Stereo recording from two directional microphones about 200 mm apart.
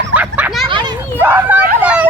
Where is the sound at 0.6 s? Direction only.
25° right (ahead or behind).